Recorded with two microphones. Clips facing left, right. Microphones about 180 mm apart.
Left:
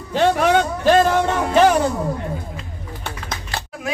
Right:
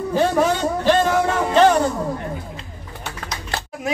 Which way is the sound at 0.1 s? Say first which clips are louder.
Left 2 dB; 75° left (ahead or behind).